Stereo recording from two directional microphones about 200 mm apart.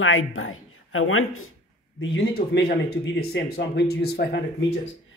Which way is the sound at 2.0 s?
60° left (ahead or behind).